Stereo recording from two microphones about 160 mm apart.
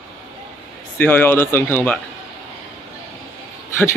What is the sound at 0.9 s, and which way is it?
Speech, 10° left (ahead or behind).